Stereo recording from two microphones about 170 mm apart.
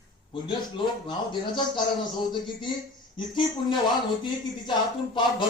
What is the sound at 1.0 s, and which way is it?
Speech, 25° left (ahead or behind).